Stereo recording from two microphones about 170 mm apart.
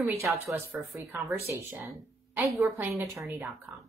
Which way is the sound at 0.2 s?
15° right (ahead or behind).